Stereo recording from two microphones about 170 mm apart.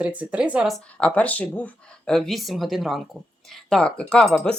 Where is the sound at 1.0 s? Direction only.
10° left (ahead or behind).